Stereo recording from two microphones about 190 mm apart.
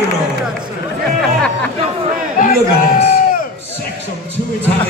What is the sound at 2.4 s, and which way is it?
Crowd, 40° left (ahead or behind).